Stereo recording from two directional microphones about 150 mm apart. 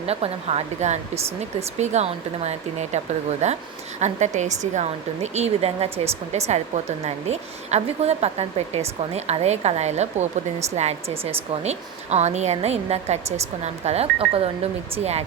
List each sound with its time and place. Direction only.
0.0 s speech: 45° right (ahead or behind)